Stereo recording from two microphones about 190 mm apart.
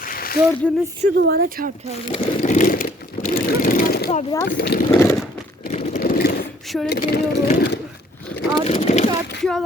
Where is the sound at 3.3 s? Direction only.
50° left (ahead or behind).